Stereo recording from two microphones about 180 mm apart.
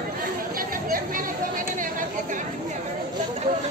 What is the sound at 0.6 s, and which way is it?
Chatter, 50° right (ahead or behind).